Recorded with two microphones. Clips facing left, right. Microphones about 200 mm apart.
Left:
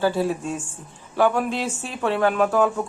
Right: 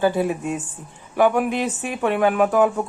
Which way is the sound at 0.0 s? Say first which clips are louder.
Right 2 dB; 15° right (ahead or behind).